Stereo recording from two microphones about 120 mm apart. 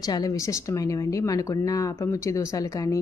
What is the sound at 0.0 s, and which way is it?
Speech, 30° left (ahead or behind).